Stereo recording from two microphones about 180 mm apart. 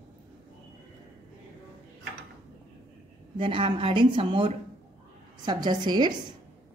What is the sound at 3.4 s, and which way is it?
Speech, 30° right (ahead or behind).